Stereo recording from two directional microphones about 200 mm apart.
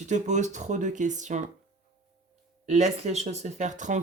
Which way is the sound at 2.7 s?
35° right (ahead or behind).